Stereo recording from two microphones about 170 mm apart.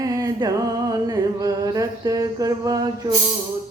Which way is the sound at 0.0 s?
20° right (ahead or behind).